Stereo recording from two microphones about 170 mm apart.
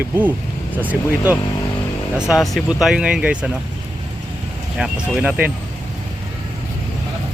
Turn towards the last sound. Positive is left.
turn(degrees=-10)  # may be behind; listen again after turning